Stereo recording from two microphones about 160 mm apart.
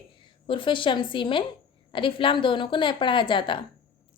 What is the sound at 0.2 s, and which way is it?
A woman's voice, 30° left (ahead or behind).